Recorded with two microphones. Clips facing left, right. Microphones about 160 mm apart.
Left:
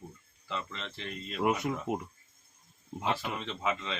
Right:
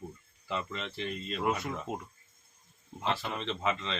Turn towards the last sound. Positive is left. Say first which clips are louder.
# right 1 dB
turn(degrees=5)  # may be behind; listen again after turning